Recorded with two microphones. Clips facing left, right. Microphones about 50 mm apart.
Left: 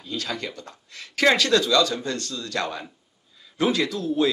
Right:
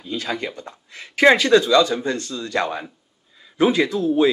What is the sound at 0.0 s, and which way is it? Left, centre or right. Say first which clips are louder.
Speech: right 4 dB; centre.